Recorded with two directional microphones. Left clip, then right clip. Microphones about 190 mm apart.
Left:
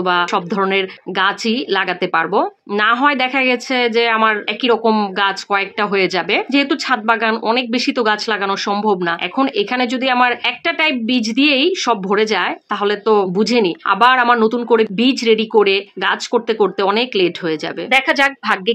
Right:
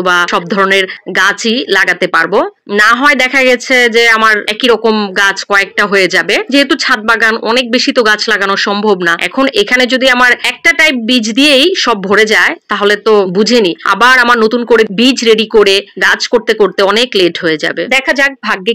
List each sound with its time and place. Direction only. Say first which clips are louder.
0.0 s speech: right 6 dB; 20° right (ahead or behind)